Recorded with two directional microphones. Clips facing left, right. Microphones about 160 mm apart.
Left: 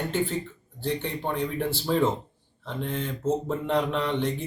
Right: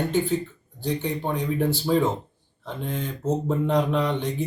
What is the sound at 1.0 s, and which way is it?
Speech, 10° right (ahead or behind).